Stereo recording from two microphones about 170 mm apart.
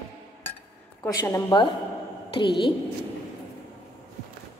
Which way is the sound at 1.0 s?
20° left (ahead or behind).